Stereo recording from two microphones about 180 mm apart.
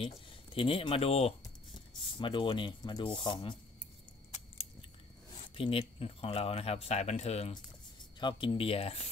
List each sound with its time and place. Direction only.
0.0 s speech: 30° left (ahead or behind)
5.5 s speech: 30° left (ahead or behind)